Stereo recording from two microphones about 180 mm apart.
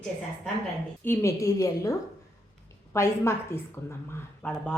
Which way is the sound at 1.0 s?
15° left (ahead or behind).